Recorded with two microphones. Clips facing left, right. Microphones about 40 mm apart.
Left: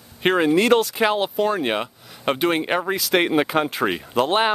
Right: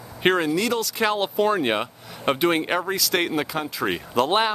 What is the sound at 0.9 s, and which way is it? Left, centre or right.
Speech, centre.